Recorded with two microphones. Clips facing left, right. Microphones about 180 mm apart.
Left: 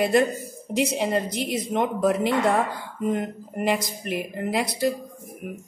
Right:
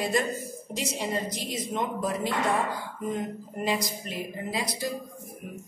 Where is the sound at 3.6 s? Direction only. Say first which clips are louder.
Left 4 dB; 60° left (ahead or behind).